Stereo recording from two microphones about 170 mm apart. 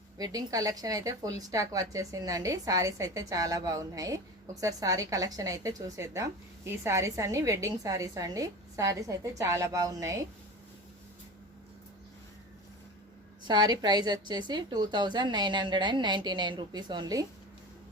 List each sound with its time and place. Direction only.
0.2 s a woman's voice: 20° right (ahead or behind)
13.4 s a woman's voice: 25° right (ahead or behind)